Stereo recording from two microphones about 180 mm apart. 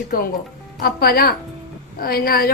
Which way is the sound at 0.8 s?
55° left (ahead or behind).